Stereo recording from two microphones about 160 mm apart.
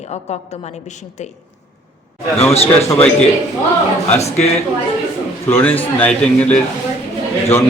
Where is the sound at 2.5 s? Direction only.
40° left (ahead or behind).